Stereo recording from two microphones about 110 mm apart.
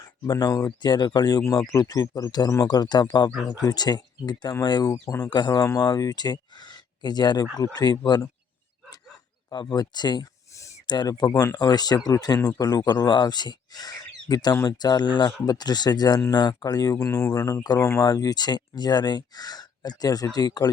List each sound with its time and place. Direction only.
0.3 s speech: 35° left (ahead or behind)
5.3 s speech: 35° left (ahead or behind)
9.5 s speech: 40° left (ahead or behind)